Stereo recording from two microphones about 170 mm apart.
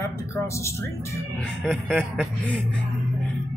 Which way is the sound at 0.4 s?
15° left (ahead or behind).